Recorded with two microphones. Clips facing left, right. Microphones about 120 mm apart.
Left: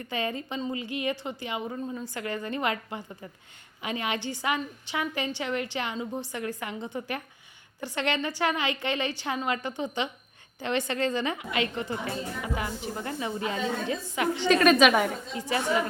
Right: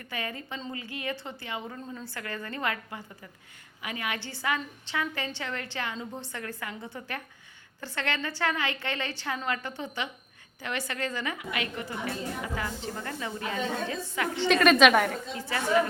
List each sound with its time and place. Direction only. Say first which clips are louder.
0.0 s a woman's voice: left 5 dB; 25° left (ahead or behind)
14.5 s a woman's voice: even; centre (ahead or behind)